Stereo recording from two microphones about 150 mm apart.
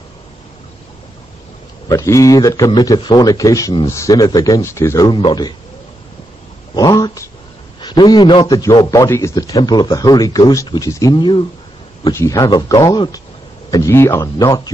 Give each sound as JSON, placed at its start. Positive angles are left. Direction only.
{"t": 1.9, "sound": "speech", "side_deg": 20}
{"t": 6.7, "sound": "cat", "side_deg": 30}
{"t": 7.8, "sound": "speech", "side_deg": 30}